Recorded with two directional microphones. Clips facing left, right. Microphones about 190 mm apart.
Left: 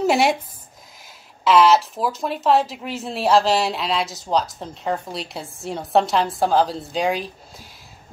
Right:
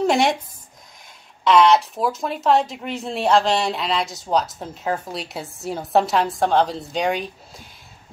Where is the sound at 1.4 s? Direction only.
Centre (ahead or behind).